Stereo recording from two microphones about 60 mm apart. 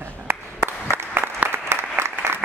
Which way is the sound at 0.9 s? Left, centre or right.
Right.